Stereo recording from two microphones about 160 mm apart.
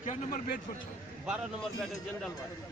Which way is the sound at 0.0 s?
50° left (ahead or behind).